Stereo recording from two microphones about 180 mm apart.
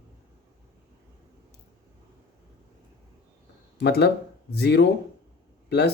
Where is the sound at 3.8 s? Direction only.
65° left (ahead or behind).